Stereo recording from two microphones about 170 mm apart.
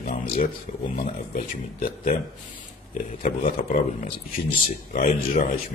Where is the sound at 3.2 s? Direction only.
55° left (ahead or behind).